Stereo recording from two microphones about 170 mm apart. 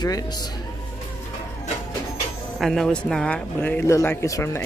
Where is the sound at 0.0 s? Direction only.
25° left (ahead or behind).